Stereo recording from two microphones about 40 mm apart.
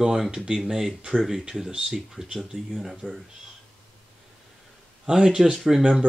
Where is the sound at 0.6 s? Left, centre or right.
Centre.